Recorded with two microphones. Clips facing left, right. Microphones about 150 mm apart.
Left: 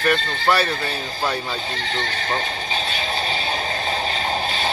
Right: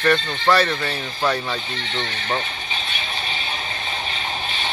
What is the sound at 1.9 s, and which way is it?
Speech, 40° left (ahead or behind).